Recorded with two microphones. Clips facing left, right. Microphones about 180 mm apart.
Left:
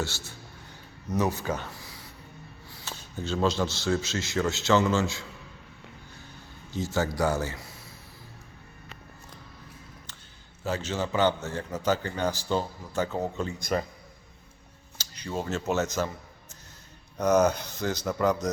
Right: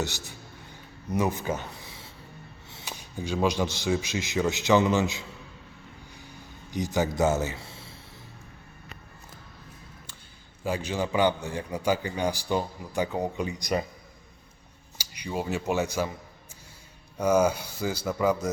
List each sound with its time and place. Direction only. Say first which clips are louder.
0.0 s a man's voice: right 1 dB; 15° right (ahead or behind)
1.4 s a sound: right 1 dB; 20° right (ahead or behind)
2.6 s speech: right 1 dB; 20° right (ahead or behind)
6.7 s a man's voice: right 2 dB; 15° right (ahead or behind)
10.6 s a man's voice: right 1 dB; 10° right (ahead or behind)
14.9 s speech: right 1 dB; 10° right (ahead or behind)
17.2 s a man's voice: even; 10° right (ahead or behind)